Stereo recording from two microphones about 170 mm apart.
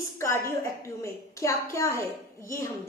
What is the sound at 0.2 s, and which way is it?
A woman's voice, 15° left (ahead or behind).